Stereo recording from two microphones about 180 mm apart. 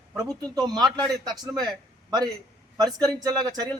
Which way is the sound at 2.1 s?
20° right (ahead or behind).